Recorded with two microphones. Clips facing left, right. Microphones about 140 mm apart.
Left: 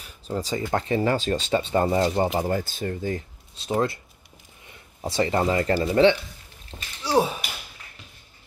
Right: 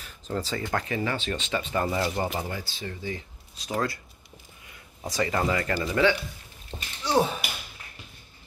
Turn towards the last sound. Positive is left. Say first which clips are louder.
# left 2 dB
turn(degrees=10)  # may be behind; listen again after turning